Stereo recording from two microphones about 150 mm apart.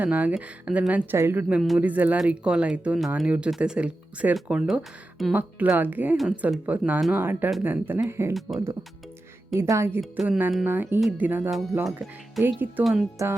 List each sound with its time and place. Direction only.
0.0 s speech: 10° right (ahead or behind)
8.3 s speech: centre (ahead or behind)
9.5 s speech: 20° right (ahead or behind)
10.0 s speech: 5° right (ahead or behind)
12.8 s speech: centre (ahead or behind)